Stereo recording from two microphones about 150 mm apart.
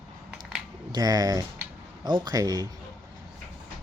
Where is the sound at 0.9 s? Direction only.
25° right (ahead or behind).